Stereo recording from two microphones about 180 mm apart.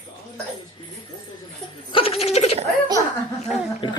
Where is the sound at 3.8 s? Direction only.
30° left (ahead or behind).